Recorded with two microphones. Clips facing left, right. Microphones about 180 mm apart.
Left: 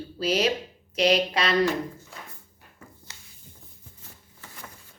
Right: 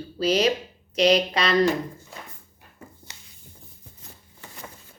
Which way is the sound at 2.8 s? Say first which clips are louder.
Right 3 dB; 20° right (ahead or behind).